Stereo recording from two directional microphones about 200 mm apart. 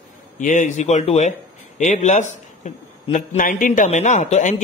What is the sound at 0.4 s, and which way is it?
A man's voice, 40° left (ahead or behind).